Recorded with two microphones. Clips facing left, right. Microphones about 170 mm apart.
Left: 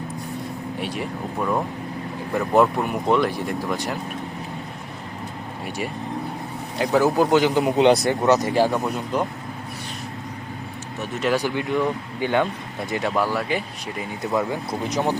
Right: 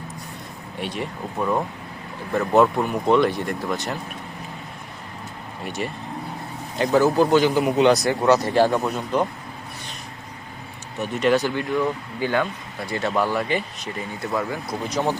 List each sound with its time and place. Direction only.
0.8 s speech: 5° left (ahead or behind)
5.6 s speech: 10° left (ahead or behind); by 8.1 s 25° left (ahead or behind)
8.3 s speech: 15° left (ahead or behind)
11.0 s speech: 5° left (ahead or behind)
13.1 s speech: 5° left (ahead or behind)
14.3 s speech: 20° left (ahead or behind)